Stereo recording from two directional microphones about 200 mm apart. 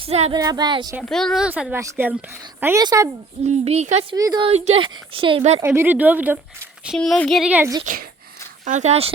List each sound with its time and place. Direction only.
0.0 s speech: 30° right (ahead or behind)
0.3 s speech: 20° right (ahead or behind)
1.0 s speech: centre (ahead or behind); by 3.1 s 15° right (ahead or behind)
3.4 s speech: 35° right (ahead or behind)
4.1 s speech: 20° right (ahead or behind)
4.4 s speech: 30° right (ahead or behind)
5.5 s speech: 10° right (ahead or behind)
8.6 s speech: 35° right (ahead or behind)